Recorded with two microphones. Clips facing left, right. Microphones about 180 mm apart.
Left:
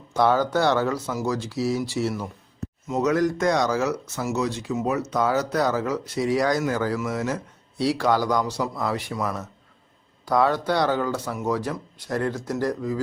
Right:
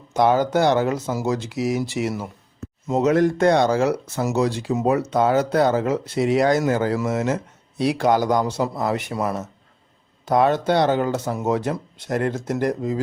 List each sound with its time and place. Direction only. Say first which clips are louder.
0.1 s speech: right 3 dB; 20° right (ahead or behind)
2.8 s speech: right 4 dB; 30° right (ahead or behind)